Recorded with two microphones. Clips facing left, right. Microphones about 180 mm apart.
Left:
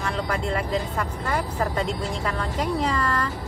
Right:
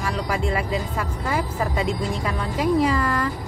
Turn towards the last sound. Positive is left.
turn(degrees=-10)  # may be behind; listen again after turning